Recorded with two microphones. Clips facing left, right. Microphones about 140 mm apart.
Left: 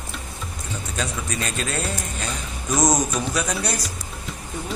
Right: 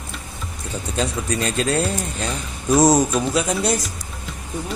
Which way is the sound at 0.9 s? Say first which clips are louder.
Right 6 dB; 30° right (ahead or behind).